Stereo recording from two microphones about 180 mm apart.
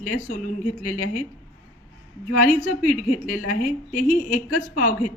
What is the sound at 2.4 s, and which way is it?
A woman's voice, 50° left (ahead or behind).